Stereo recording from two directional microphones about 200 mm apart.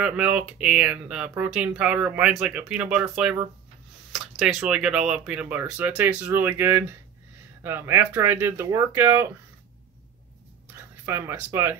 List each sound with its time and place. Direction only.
0.0 s speech: 5° right (ahead or behind)
11.1 s speech: 10° right (ahead or behind)